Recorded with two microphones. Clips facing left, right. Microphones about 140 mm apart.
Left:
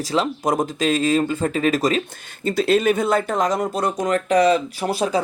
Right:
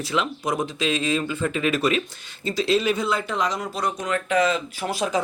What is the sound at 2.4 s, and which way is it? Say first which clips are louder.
Speech: left 4 dB; 50° left (ahead or behind).